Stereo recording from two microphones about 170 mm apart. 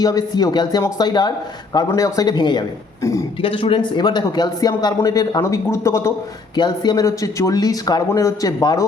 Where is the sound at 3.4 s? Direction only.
30° left (ahead or behind).